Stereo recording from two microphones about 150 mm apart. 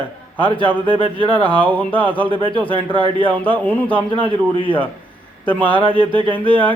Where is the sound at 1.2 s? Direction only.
30° right (ahead or behind).